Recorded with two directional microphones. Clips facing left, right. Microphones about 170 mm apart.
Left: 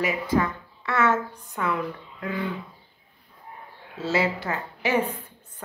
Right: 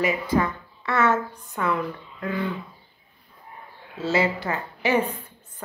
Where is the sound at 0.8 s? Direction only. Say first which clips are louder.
Right 1 dB; 5° left (ahead or behind).